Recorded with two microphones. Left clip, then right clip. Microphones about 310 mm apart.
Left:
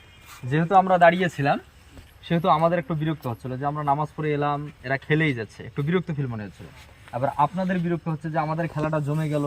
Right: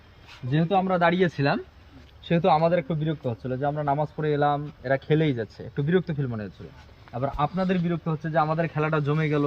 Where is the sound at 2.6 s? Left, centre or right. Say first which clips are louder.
Even; left.